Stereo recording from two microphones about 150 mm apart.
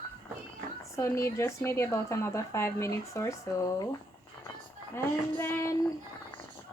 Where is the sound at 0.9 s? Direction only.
20° left (ahead or behind).